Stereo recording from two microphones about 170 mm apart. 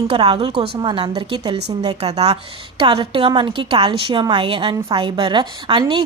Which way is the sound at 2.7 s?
30° right (ahead or behind).